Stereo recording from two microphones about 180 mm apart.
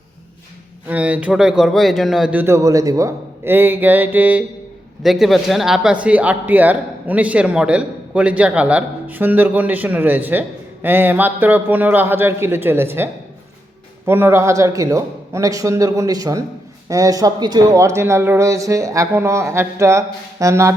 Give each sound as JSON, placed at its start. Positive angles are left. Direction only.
{"t": 0.9, "sound": "speech", "side_deg": -10}